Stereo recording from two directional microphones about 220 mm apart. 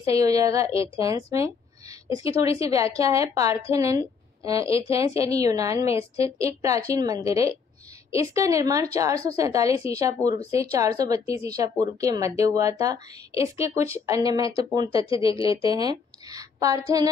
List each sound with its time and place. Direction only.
0.0 s a woman's voice: 15° right (ahead or behind)
14.9 s speech: 25° left (ahead or behind)
15.7 s speech: 15° right (ahead or behind)